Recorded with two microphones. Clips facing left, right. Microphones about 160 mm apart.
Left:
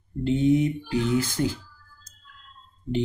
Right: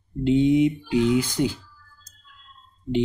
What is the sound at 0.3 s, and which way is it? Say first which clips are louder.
Speech: right 3 dB; 15° right (ahead or behind).